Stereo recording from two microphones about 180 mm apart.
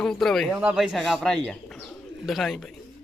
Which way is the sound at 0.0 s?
5° left (ahead or behind).